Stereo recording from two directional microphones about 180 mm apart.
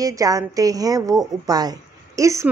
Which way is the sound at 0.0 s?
20° right (ahead or behind).